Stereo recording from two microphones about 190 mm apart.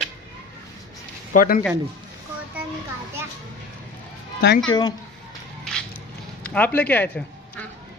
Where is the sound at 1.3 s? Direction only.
45° left (ahead or behind).